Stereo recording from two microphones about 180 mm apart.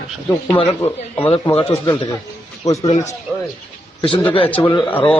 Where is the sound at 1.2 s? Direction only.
30° left (ahead or behind).